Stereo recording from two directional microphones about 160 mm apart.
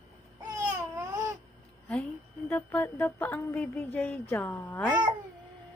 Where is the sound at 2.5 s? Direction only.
10° left (ahead or behind).